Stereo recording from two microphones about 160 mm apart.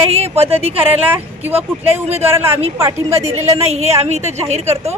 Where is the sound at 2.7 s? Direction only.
20° right (ahead or behind).